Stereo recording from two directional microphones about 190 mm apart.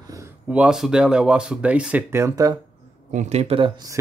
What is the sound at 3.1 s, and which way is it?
Speech, 35° right (ahead or behind).